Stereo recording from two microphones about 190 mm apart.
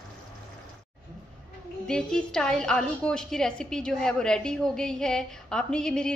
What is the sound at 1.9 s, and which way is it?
A woman's voice, 5° left (ahead or behind).